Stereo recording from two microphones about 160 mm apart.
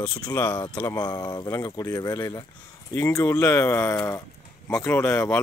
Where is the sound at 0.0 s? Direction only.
20° left (ahead or behind).